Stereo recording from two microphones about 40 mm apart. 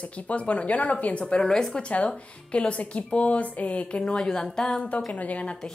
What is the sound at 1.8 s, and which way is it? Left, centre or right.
Speech, left.